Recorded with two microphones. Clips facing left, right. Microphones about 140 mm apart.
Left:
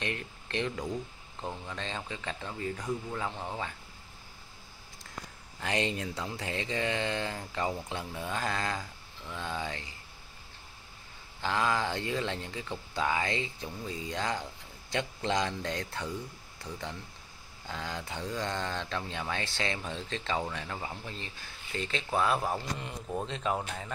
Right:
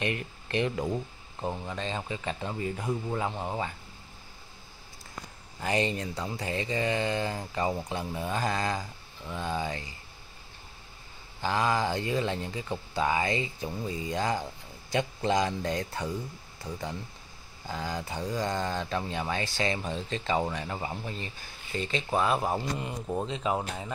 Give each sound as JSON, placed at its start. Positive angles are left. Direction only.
{"t": 0.0, "sound": "speech", "side_deg": -5}
{"t": 0.8, "sound": "speech", "side_deg": -20}
{"t": 1.8, "sound": "speech", "side_deg": -5}
{"t": 2.9, "sound": "speech", "side_deg": -20}
{"t": 5.6, "sound": "speech", "side_deg": 0}
{"t": 11.4, "sound": "speech", "side_deg": -5}
{"t": 22.5, "sound": "speech", "side_deg": -20}
{"t": 23.2, "sound": "speech", "side_deg": -5}